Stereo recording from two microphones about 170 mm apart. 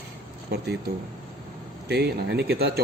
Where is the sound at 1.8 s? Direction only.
75° right (ahead or behind).